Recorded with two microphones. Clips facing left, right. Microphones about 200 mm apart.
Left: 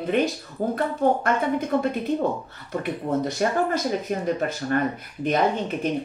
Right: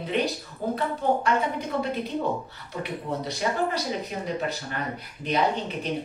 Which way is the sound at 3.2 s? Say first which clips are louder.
Left 1 dB; 50° left (ahead or behind).